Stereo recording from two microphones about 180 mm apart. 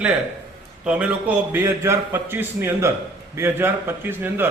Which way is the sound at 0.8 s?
5° right (ahead or behind).